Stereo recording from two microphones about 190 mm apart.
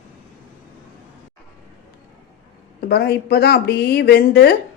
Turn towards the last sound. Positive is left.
turn(degrees=55)  # may be behind; listen again after turning